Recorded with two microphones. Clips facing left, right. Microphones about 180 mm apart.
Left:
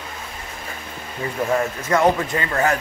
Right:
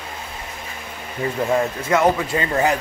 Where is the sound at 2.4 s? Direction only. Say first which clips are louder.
Right 1 dB; 20° right (ahead or behind).